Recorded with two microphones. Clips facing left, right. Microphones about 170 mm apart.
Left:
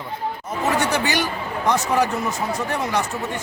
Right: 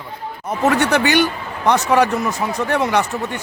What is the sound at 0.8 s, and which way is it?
A man's voice, 65° right (ahead or behind).